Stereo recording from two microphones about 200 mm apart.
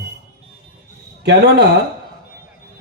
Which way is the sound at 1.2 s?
60° right (ahead or behind).